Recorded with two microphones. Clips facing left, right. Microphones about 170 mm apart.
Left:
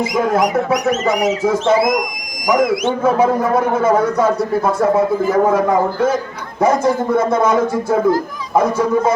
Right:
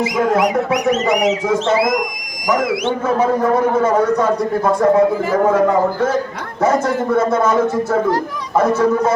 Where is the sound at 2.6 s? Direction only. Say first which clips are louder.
Left 5 dB; 45° left (ahead or behind).